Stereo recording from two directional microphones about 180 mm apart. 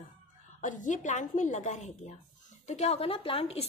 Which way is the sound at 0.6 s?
45° left (ahead or behind).